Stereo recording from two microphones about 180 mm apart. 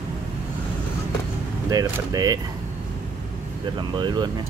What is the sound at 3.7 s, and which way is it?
Speech, 25° right (ahead or behind).